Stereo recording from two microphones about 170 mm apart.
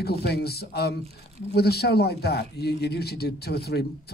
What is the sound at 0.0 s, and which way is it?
Speech, 70° left (ahead or behind).